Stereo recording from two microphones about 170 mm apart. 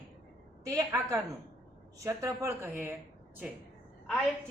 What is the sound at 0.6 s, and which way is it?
A woman's voice, 20° right (ahead or behind).